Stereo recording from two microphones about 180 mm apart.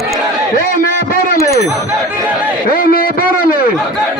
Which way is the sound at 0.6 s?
50° left (ahead or behind).